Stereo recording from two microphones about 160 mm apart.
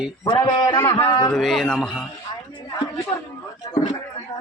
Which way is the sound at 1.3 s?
Centre (ahead or behind).